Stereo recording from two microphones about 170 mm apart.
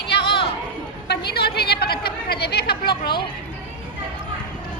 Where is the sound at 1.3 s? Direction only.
70° left (ahead or behind).